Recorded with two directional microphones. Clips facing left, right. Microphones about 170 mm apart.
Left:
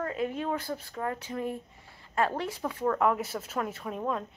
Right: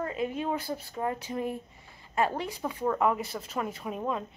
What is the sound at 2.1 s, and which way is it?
A woman's voice, 5° right (ahead or behind).